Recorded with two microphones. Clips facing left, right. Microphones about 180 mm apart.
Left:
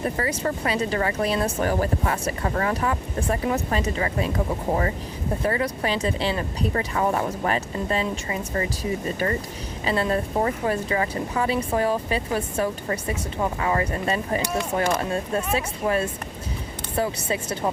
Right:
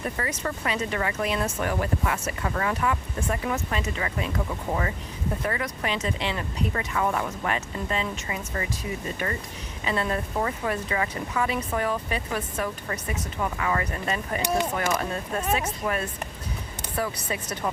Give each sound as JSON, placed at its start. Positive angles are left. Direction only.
{"t": 0.2, "sound": "speech", "side_deg": 30}